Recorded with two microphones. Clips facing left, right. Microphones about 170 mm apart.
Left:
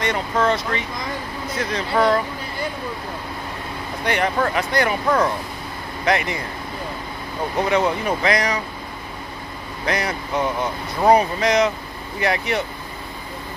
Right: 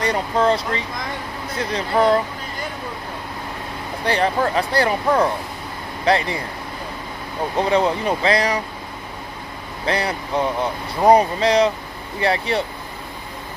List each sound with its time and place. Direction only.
0.0 s speech: 35° right (ahead or behind)
4.0 s speech: 30° right (ahead or behind)
7.5 s speech: 25° right (ahead or behind)
9.8 s speech: 30° right (ahead or behind)